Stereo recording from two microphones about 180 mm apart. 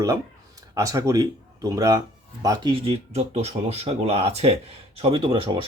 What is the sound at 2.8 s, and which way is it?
Speech, 35° right (ahead or behind).